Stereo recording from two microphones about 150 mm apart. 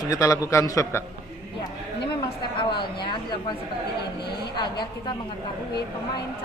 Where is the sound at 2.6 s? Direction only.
30° left (ahead or behind).